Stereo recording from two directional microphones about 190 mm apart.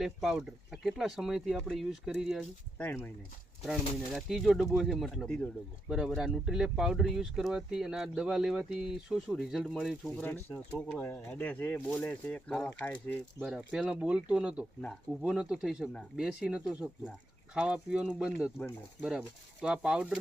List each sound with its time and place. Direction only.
0.0 s speech: centre (ahead or behind)
3.7 s speech: centre (ahead or behind)
13.4 s speech: centre (ahead or behind)
19.6 s speech: 5° right (ahead or behind)